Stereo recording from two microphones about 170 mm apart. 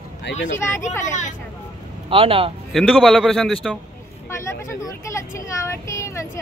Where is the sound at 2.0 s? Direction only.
35° right (ahead or behind).